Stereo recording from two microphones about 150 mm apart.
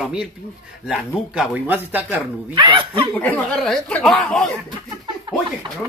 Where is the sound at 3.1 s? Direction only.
10° left (ahead or behind).